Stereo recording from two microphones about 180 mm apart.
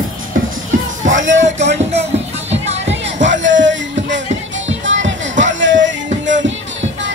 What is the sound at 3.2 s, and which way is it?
Music, 90° right.